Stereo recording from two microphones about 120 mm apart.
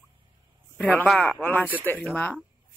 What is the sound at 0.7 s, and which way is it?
Speech, 10° left (ahead or behind).